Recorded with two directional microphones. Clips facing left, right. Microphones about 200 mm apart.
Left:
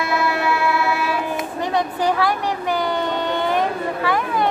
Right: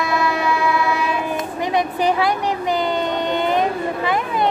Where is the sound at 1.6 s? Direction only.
15° right (ahead or behind).